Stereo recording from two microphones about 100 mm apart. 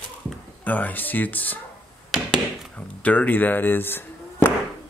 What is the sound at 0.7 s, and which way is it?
Speech, 15° left (ahead or behind).